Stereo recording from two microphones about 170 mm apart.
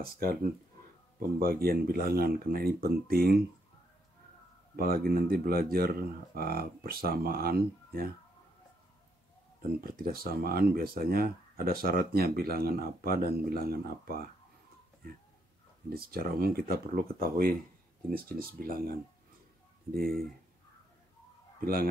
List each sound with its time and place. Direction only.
0.0 s speech: 60° right (ahead or behind)
1.4 s speech: 60° right (ahead or behind)
4.7 s speech: 60° right (ahead or behind)
9.8 s speech: 60° right (ahead or behind)
15.9 s speech: 60° right (ahead or behind)
19.9 s speech: 60° right (ahead or behind)